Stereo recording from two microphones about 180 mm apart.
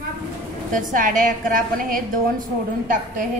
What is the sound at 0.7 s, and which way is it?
A woman's voice, 50° right (ahead or behind).